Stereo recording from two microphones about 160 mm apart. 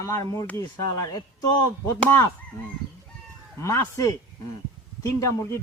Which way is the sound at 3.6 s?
20° left (ahead or behind).